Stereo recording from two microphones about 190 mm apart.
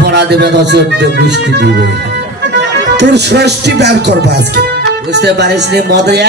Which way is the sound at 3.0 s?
60° right (ahead or behind).